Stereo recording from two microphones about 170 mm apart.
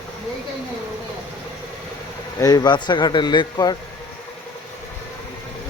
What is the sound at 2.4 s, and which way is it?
Speech, 20° left (ahead or behind).